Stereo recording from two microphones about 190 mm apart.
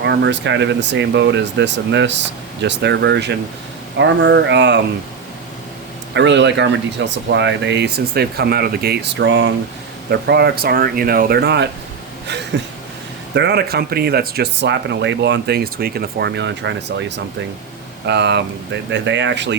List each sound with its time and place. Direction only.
0.0 s speech: 65° right (ahead or behind)
6.1 s speech: 70° right (ahead or behind)
10.1 s speech: 60° right (ahead or behind)
13.3 s speech: 60° right (ahead or behind)